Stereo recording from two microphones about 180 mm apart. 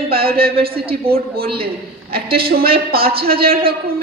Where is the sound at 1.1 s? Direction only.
55° right (ahead or behind).